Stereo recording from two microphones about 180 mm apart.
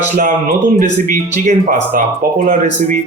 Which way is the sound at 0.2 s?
50° right (ahead or behind).